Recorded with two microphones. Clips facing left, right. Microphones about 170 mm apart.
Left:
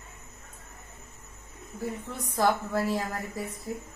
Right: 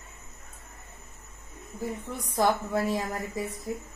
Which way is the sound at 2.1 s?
10° right (ahead or behind).